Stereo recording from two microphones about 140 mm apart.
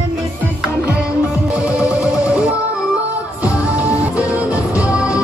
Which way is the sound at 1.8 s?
10° right (ahead or behind).